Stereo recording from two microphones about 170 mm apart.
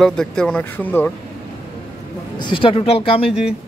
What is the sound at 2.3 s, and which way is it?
Speech, 30° left (ahead or behind).